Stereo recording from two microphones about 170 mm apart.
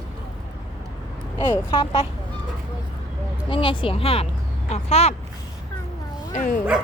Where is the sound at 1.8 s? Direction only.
30° left (ahead or behind).